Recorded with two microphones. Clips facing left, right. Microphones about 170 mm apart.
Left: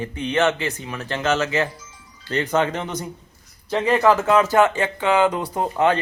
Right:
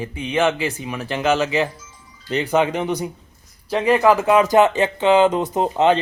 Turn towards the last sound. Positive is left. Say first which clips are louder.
# right 3 dB
turn(degrees=-20)  # may be behind; listen again after turning